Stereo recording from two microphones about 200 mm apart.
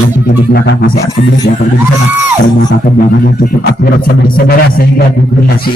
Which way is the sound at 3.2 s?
50° left (ahead or behind).